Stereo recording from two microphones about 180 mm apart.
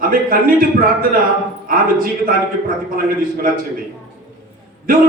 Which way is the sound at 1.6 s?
50° right (ahead or behind).